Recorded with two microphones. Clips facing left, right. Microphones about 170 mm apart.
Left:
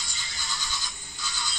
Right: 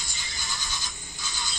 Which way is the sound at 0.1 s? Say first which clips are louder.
Even; 20° right (ahead or behind).